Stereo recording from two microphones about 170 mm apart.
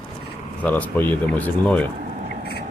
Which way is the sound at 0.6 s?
10° left (ahead or behind).